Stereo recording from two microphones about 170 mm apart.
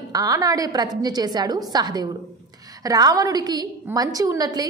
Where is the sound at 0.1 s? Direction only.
20° right (ahead or behind).